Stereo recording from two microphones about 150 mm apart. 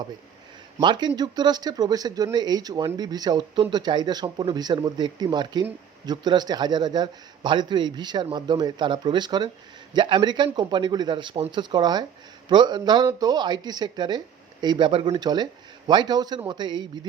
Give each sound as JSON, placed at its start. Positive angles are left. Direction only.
{"t": 0.8, "sound": "speech", "side_deg": -30}